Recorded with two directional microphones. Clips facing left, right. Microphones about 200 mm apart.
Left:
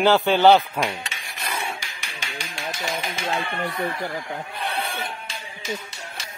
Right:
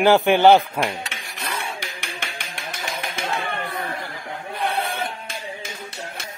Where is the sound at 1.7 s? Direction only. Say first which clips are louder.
Right 5 dB; 55° right (ahead or behind).